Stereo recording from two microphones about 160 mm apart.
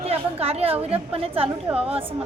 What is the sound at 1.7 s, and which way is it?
Speech, 10° right (ahead or behind).